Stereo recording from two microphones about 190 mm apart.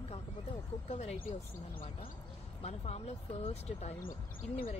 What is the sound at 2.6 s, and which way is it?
Speech, 35° left (ahead or behind).